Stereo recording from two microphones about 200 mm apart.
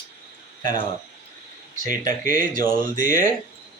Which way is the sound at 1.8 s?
40° right (ahead or behind).